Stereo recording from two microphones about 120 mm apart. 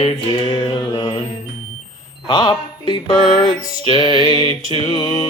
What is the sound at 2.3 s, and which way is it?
Music, 40° left (ahead or behind).